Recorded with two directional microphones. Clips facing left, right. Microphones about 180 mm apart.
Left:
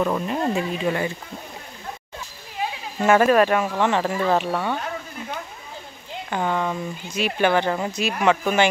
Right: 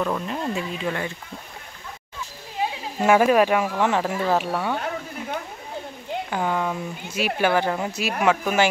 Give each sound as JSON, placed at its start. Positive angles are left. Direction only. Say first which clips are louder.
{"t": 0.0, "sound": "speech", "louder": "left 3 dB", "side_deg": 10}
{"t": 0.4, "sound": "speech", "louder": "left 4 dB", "side_deg": 45}
{"t": 0.8, "sound": "speech", "louder": "left 3 dB", "side_deg": 10}
{"t": 3.0, "sound": "speech", "louder": "left 1 dB", "side_deg": -10}
{"t": 6.3, "sound": "speech", "louder": "left 2 dB", "side_deg": -5}